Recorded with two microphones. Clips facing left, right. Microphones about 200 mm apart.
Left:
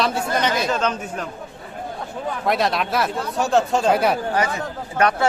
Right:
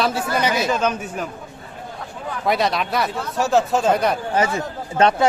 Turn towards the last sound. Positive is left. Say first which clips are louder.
# right 3 dB
turn(degrees=-25)  # may be behind; listen again after turning